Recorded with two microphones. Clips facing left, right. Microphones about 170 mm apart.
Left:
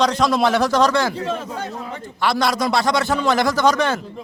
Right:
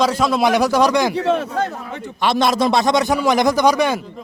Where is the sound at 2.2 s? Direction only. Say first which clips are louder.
Right 3 dB; 20° right (ahead or behind).